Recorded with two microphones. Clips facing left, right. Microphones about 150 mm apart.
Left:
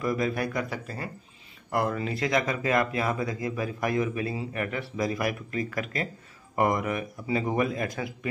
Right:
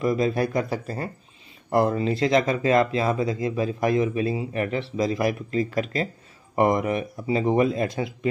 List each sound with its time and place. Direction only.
0.0 s speech: 25° right (ahead or behind)